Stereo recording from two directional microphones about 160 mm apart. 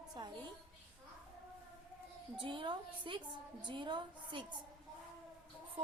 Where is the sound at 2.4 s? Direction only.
30° right (ahead or behind).